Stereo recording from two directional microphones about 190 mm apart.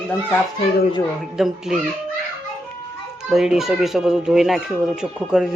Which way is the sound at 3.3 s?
Centre (ahead or behind).